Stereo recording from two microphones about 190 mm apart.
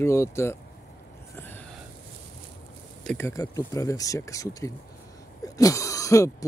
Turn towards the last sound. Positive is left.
turn(degrees=15)  # may be behind; listen again after turning